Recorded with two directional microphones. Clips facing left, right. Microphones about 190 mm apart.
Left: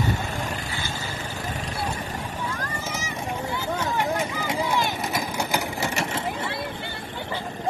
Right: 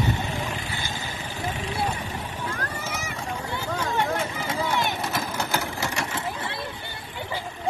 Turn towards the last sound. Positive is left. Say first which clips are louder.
# left 2 dB
turn(degrees=20)  # may be behind; listen again after turning